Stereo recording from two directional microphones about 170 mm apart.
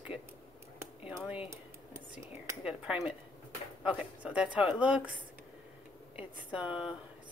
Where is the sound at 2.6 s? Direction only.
5° right (ahead or behind).